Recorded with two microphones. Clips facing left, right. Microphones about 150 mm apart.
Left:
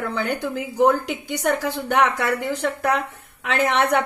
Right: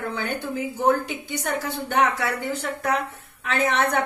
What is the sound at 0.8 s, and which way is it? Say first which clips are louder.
A woman's voice: left 4 dB; 75° left (ahead or behind).